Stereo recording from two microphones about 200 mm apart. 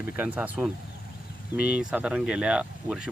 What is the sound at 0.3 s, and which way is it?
Speech, 5° right (ahead or behind).